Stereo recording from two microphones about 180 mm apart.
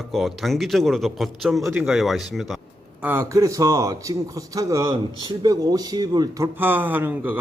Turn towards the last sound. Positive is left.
turn(degrees=-10)  # may be behind; listen again after turning